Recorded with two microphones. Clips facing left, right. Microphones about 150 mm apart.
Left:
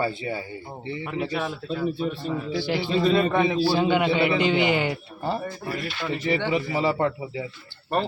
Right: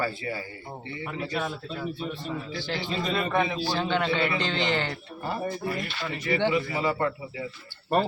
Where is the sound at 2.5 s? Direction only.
10° left (ahead or behind).